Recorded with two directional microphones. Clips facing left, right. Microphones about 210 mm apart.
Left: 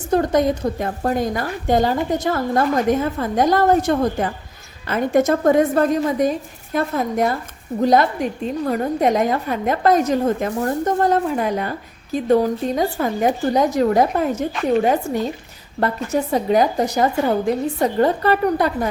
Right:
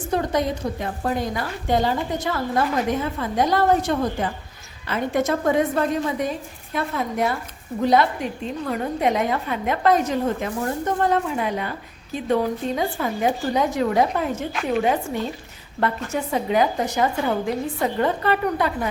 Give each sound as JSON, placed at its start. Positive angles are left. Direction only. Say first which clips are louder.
{"t": 0.1, "sound": "a woman's voice", "louder": "left 6 dB", "side_deg": 45}